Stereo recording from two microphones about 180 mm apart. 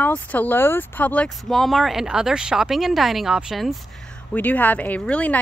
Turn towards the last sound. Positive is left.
turn(degrees=5)  # may be behind; listen again after turning